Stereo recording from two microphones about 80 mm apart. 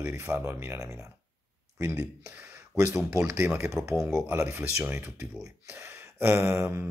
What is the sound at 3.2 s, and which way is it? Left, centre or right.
Speech, centre.